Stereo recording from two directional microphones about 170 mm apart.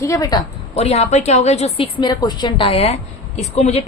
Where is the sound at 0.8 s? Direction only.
35° left (ahead or behind).